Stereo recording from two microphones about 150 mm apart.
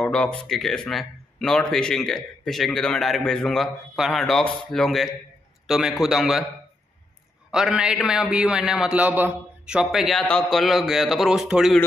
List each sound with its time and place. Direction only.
0.0 s speech: 5° left (ahead or behind)
7.5 s speech: 5° right (ahead or behind)